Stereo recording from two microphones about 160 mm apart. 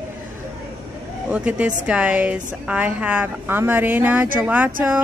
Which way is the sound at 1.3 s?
10° right (ahead or behind).